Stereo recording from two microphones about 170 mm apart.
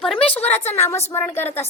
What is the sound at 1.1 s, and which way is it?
Speech, 20° left (ahead or behind).